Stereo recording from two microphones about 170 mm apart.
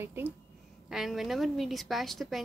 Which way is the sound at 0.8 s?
Centre (ahead or behind).